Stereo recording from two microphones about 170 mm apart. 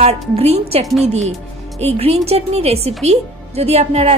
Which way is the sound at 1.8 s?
35° right (ahead or behind).